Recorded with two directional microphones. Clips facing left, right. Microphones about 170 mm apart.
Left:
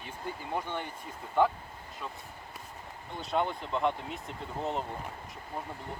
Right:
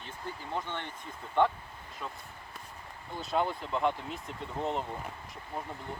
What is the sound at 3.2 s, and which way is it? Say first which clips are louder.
Speech: even; centre (ahead or behind).